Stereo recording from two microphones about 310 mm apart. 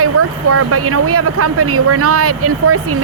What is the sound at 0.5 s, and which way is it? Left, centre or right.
Speech, right.